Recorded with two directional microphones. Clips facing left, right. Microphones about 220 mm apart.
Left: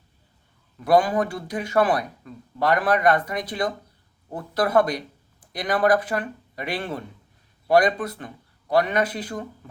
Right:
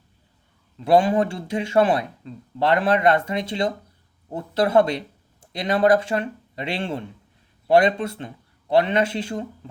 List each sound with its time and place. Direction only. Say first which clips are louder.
0.8 s speech: right 2 dB; 25° right (ahead or behind)